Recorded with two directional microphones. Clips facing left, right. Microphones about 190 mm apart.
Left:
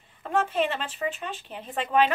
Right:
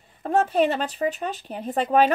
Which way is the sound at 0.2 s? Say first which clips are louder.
Right 5 dB; 40° right (ahead or behind).